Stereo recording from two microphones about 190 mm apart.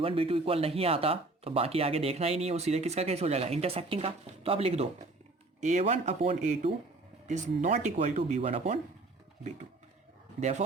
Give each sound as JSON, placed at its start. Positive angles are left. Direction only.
{"t": 0.0, "sound": "speech", "side_deg": -30}